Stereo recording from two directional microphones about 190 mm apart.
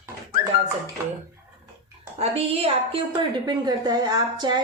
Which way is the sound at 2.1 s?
30° right (ahead or behind).